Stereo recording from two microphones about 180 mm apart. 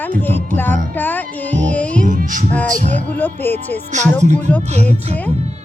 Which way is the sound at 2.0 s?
45° right (ahead or behind).